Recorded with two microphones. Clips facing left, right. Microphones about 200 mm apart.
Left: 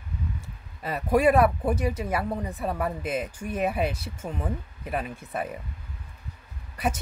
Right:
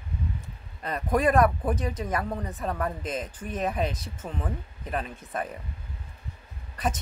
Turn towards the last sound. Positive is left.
turn(degrees=10)  # may be behind; listen again after turning